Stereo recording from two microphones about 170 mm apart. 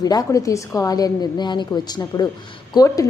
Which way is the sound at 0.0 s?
20° left (ahead or behind).